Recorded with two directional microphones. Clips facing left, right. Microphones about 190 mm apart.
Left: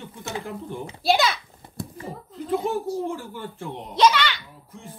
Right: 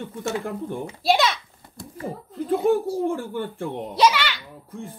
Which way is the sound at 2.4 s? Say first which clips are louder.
Right 5 dB; 55° right (ahead or behind).